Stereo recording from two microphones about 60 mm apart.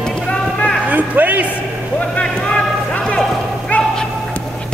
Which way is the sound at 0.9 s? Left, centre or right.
Right.